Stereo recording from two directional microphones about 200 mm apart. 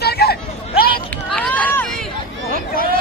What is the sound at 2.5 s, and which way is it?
Hubbub, 45° left (ahead or behind).